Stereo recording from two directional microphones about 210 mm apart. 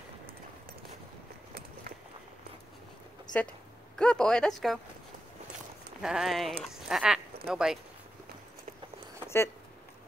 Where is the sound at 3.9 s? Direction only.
5° left (ahead or behind).